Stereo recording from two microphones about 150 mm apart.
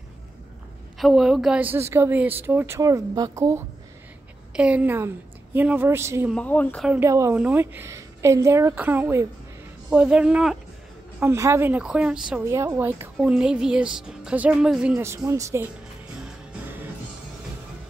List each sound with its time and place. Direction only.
0.9 s a woman's voice: centre (ahead or behind); by 3.6 s 20° right (ahead or behind)
4.6 s a woman's voice: 10° right (ahead or behind)
6.3 s speech: 10° left (ahead or behind)
7.0 s a woman's voice: 20° right (ahead or behind); by 10.6 s 5° right (ahead or behind)
11.1 s a woman's voice: 20° right (ahead or behind)
12.4 s a woman's voice: 20° right (ahead or behind)
15.0 s a woman's voice: 20° right (ahead or behind)